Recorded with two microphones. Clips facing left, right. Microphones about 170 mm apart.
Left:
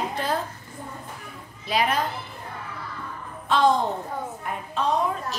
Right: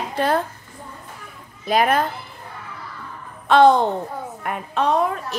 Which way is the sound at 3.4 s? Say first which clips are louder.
Right 7 dB; 65° right (ahead or behind).